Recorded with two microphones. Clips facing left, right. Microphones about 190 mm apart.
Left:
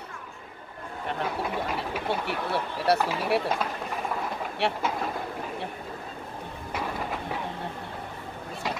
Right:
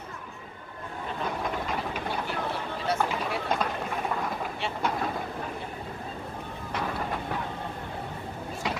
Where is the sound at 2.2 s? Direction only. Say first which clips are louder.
Left 2 dB; 70° left (ahead or behind).